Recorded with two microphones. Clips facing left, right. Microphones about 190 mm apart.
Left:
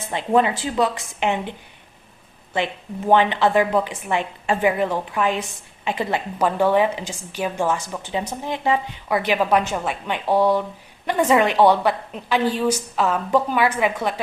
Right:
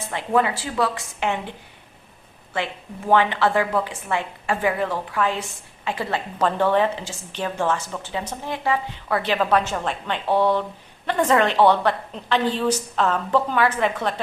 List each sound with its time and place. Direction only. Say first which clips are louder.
0.1 s a woman's voice: left 3 dB; 20° left (ahead or behind)
3.1 s a woman's voice: left 2 dB; 20° left (ahead or behind)